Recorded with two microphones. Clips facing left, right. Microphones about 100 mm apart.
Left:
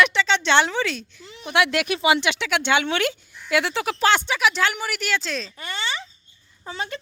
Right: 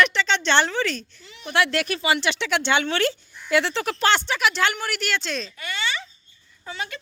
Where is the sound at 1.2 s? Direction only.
35° left (ahead or behind).